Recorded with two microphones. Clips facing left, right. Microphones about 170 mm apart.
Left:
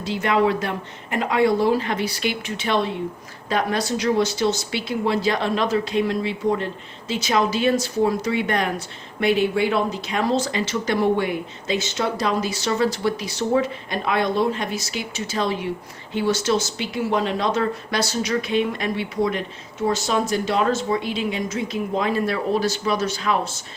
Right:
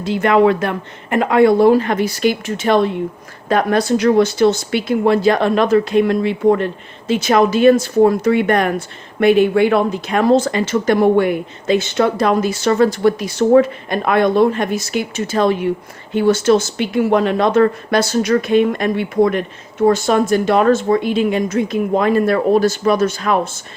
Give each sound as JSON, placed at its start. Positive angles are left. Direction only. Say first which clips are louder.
{"t": 0.0, "sound": "speech", "louder": "right 7 dB", "side_deg": -55}